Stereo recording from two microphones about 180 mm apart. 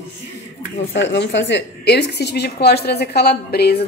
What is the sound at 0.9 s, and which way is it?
A woman's voice, 80° left.